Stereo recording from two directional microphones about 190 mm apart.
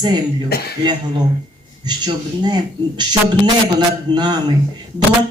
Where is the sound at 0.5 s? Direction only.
55° left (ahead or behind).